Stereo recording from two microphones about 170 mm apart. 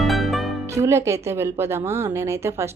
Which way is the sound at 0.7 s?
15° right (ahead or behind).